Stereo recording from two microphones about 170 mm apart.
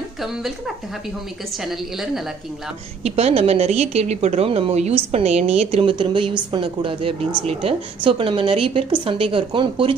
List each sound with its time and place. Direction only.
1.6 s a woman's voice: centre (ahead or behind)
3.0 s a woman's voice: 35° right (ahead or behind)